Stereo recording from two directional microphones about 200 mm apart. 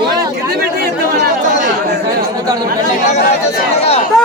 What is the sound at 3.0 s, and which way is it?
Speech, 35° left (ahead or behind).